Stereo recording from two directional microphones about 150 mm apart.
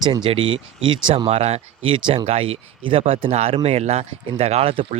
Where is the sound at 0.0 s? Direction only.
30° right (ahead or behind).